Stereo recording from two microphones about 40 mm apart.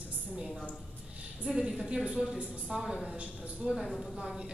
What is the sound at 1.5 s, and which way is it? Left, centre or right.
A woman's voice, right.